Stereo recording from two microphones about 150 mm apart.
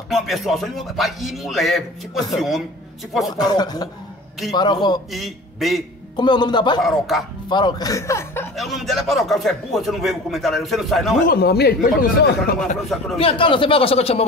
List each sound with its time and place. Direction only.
0.1 s speech: centre (ahead or behind)
3.3 s a man's voice: 25° left (ahead or behind)
5.1 s speech: centre (ahead or behind)
6.1 s a man's voice: 30° left (ahead or behind)
6.8 s speech: centre (ahead or behind)
7.4 s a man's voice: 30° left (ahead or behind)
8.5 s speech: centre (ahead or behind)
11.2 s speech: 90° left
13.2 s a man's voice: 35° left (ahead or behind)